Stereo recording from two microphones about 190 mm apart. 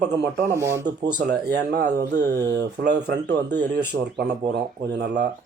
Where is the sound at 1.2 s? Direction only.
55° right (ahead or behind).